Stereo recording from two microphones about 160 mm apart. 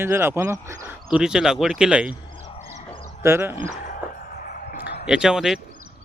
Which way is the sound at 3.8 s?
65° left (ahead or behind).